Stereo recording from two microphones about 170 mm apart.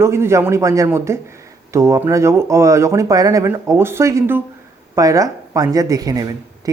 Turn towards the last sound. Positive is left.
turn(degrees=-20)  # may be behind; listen again after turning